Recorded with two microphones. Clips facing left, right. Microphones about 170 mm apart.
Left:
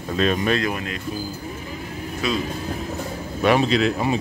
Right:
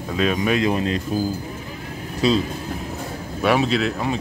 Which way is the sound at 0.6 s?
30° right (ahead or behind).